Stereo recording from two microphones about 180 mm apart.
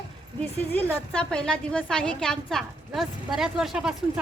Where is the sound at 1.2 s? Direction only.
5° left (ahead or behind).